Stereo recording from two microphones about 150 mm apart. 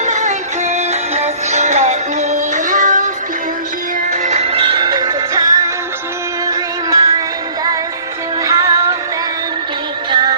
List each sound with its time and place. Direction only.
0.0 s music: 55° right (ahead or behind)
4.1 s music: 55° right (ahead or behind); by 7.1 s 25° right (ahead or behind)
8.4 s music: 20° right (ahead or behind)
10.1 s music: 30° right (ahead or behind)